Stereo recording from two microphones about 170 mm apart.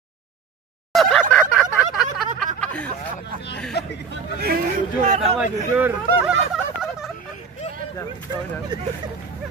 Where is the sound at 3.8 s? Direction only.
75° left (ahead or behind).